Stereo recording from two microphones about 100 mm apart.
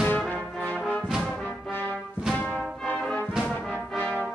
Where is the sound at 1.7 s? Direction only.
20° left (ahead or behind).